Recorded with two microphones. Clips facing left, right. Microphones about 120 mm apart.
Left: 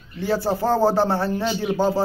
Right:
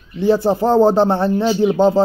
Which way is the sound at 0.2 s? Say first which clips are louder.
Right 7 dB; 20° right (ahead or behind).